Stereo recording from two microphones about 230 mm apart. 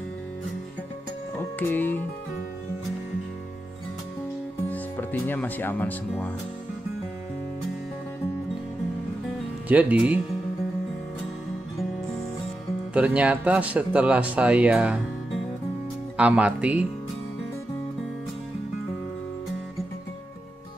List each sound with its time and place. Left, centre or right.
1.6 s speech: centre
4.6 s speech: centre
9.7 s speech: centre
12.9 s speech: centre
16.2 s speech: centre